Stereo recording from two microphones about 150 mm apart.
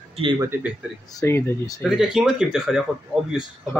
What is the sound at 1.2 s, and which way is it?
Speech, 15° left (ahead or behind).